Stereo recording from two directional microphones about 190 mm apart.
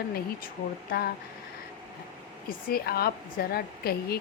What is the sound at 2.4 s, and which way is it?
A woman's voice, 55° left (ahead or behind).